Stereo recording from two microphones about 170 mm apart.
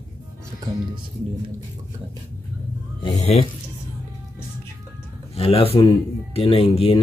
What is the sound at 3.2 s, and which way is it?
Speech, 40° left (ahead or behind).